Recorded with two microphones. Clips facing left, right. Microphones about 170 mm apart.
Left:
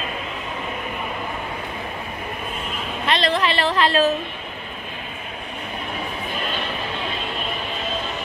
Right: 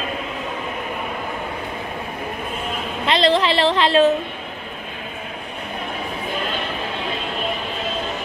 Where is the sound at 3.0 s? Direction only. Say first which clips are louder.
Right 4 dB; 25° right (ahead or behind).